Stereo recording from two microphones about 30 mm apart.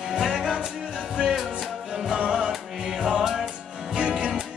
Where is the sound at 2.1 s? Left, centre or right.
Right.